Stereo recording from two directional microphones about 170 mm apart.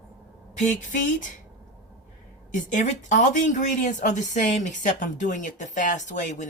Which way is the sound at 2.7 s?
45° left (ahead or behind).